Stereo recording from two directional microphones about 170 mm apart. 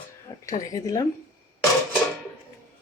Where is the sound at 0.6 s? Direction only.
20° left (ahead or behind).